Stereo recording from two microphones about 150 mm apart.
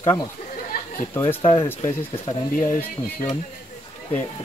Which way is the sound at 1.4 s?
35° left (ahead or behind).